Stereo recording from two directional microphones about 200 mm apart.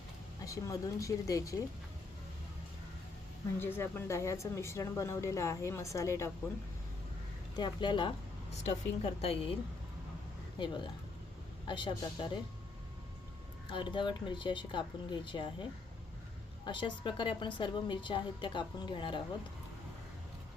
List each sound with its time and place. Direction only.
0.4 s speech: 15° left (ahead or behind)
3.6 s speech: 10° left (ahead or behind)
7.5 s a woman's voice: 20° left (ahead or behind)
10.6 s a woman's voice: 20° left (ahead or behind)
13.7 s a woman's voice: 25° left (ahead or behind)
16.6 s a woman's voice: 25° left (ahead or behind)